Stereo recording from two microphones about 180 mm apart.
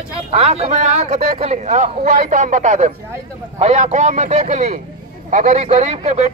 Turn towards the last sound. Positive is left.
turn(degrees=-40)  # may be behind; listen again after turning